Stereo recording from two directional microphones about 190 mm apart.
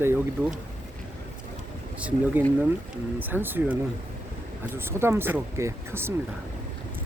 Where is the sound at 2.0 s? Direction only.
5° right (ahead or behind).